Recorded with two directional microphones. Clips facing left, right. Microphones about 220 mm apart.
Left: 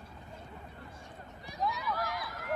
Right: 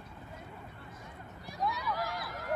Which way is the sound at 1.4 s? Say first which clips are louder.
Even; centre (ahead or behind).